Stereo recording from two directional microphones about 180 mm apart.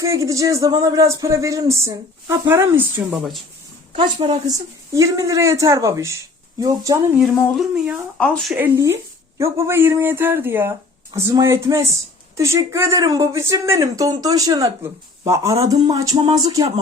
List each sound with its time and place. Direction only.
0.0 s speech: 15° right (ahead or behind)
4.2 s speech: 20° right (ahead or behind)
6.6 s a sound: 20° right (ahead or behind)
7.2 s speech: centre (ahead or behind)
8.5 s speech: 15° right (ahead or behind)
15.7 s a sound: 20° right (ahead or behind)